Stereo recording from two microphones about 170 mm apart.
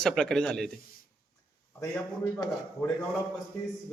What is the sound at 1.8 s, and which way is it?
A man's voice, 15° left (ahead or behind).